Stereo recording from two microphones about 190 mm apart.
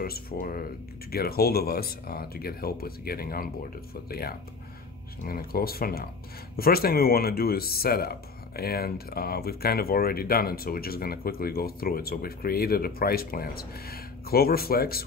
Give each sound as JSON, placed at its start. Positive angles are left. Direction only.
{"t": 0.0, "sound": "speech", "side_deg": 50}